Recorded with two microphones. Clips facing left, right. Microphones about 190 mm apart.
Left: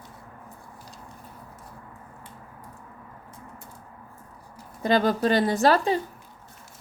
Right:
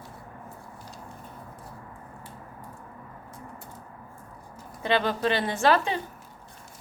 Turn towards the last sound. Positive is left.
turn(degrees=40)  # may be behind; listen again after turning